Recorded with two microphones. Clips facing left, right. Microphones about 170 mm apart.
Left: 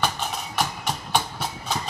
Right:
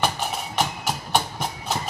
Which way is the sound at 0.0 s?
10° right (ahead or behind).